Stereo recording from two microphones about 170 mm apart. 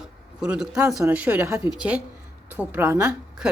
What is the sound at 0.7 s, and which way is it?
A woman's voice, 20° right (ahead or behind).